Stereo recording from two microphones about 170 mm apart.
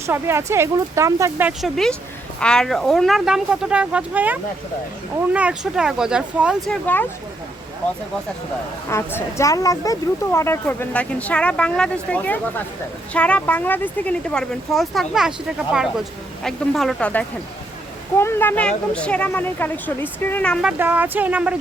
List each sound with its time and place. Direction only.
0.0 s speech: 15° right (ahead or behind)
1.6 s speech: centre (ahead or behind)
8.9 s a woman's voice: 15° left (ahead or behind)
20.7 s speech: 10° right (ahead or behind)